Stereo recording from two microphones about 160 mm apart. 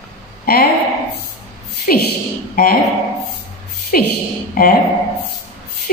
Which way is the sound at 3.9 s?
65° left (ahead or behind).